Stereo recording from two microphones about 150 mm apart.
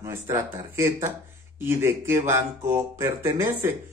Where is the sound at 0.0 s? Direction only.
20° right (ahead or behind).